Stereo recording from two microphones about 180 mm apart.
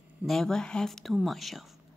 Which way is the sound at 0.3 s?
5° left (ahead or behind).